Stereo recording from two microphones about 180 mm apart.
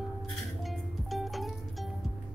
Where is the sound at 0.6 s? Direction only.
Centre (ahead or behind).